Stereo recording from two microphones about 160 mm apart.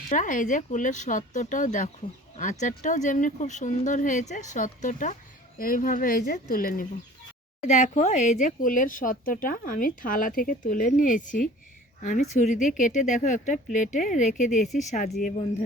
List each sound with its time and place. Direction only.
0.1 s speech: 55° left (ahead or behind)
7.6 s speech: 50° left (ahead or behind)